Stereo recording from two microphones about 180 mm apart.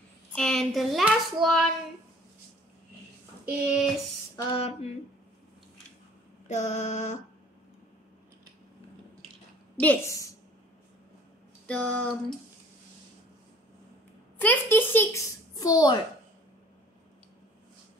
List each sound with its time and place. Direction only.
0.3 s child singing: 5° left (ahead or behind)
3.4 s speech: 5° right (ahead or behind)
4.4 s mantra: 30° left (ahead or behind)
6.4 s mantra: 40° left (ahead or behind)
9.8 s a woman's voice: 10° left (ahead or behind)
11.6 s a child's voice: 10° left (ahead or behind)
14.4 s a child's voice: 10° left (ahead or behind)